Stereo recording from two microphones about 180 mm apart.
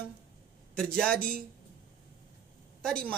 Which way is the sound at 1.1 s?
55° right (ahead or behind).